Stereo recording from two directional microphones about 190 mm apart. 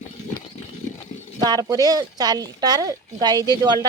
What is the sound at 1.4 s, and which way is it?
Speech, 20° right (ahead or behind).